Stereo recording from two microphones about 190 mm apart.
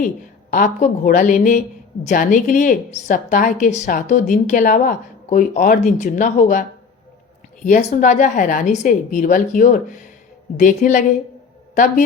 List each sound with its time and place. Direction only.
0.5 s a woman's voice: 45° left (ahead or behind)